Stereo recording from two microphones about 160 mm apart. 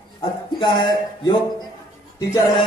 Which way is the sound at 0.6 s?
30° left (ahead or behind).